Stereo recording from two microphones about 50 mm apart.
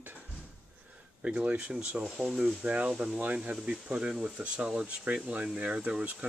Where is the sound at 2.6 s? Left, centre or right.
Right.